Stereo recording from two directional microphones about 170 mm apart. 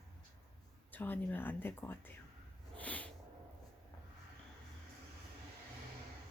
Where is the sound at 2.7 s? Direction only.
10° left (ahead or behind).